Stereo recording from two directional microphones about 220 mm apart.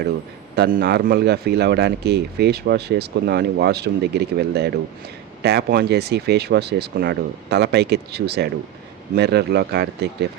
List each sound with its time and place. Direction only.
0.5 s speech: 45° right (ahead or behind)